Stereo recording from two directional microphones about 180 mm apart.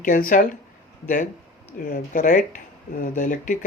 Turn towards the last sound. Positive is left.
turn(degrees=45)  # may be behind; listen again after turning